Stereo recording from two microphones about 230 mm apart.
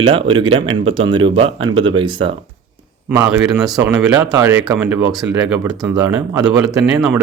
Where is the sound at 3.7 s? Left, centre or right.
Centre.